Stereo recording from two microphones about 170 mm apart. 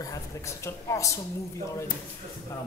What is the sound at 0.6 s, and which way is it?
Speech, 20° left (ahead or behind).